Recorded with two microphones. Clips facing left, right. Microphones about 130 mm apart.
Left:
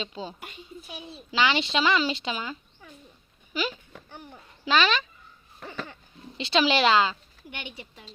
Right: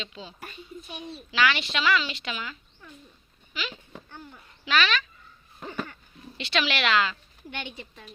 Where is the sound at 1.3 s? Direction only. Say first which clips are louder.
Left 1 dB; 25° left (ahead or behind).